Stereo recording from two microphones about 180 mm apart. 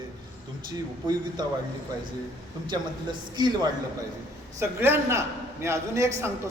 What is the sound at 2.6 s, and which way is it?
A man's voice, 25° right (ahead or behind).